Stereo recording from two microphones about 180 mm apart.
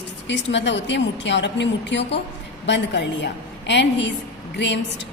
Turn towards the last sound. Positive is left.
turn(degrees=75)  # may be behind; listen again after turning